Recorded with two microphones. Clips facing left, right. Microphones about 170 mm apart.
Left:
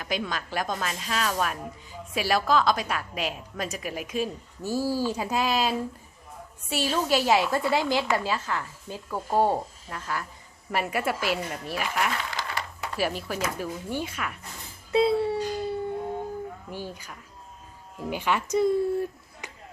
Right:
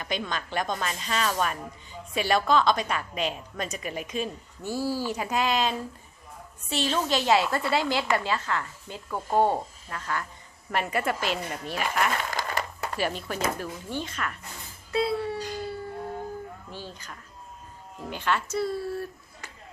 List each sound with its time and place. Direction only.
0.0 s a woman's voice: 5° left (ahead or behind)
12.1 s a sound: 45° right (ahead or behind)
13.0 s a woman's voice: 5° left (ahead or behind)
14.9 s a sound: 25° left (ahead or behind)
15.8 s howl: 20° left (ahead or behind)
16.7 s a woman's voice: 10° left (ahead or behind)